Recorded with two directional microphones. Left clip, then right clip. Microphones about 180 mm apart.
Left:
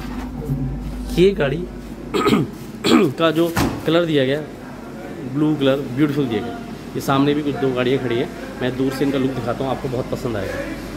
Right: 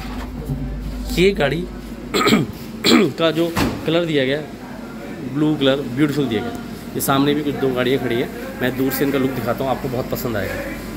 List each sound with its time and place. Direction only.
1.2 s speech: 15° left (ahead or behind)
2.1 s speech: 5° left (ahead or behind)
5.4 s speech: centre (ahead or behind)